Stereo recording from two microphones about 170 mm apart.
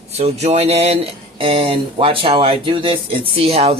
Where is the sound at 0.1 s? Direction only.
40° right (ahead or behind).